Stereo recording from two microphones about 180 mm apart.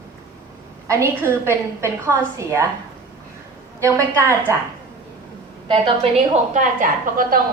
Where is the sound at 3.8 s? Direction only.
15° right (ahead or behind).